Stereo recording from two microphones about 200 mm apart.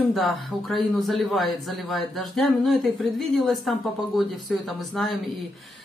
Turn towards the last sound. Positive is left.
turn(degrees=0)  # may be behind; listen again after turning